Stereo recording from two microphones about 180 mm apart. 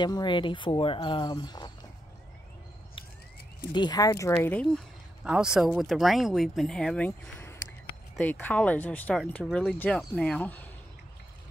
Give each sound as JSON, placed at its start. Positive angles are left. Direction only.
{"t": 0.0, "sound": "speech", "side_deg": 25}
{"t": 3.7, "sound": "speech", "side_deg": 25}
{"t": 4.4, "sound": "speech", "side_deg": 5}
{"t": 5.2, "sound": "speech", "side_deg": -5}